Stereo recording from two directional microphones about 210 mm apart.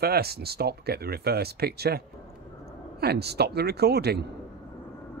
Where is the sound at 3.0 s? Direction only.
50° right (ahead or behind).